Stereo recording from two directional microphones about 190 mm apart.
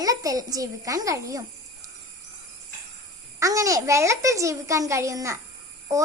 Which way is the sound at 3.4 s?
15° right (ahead or behind).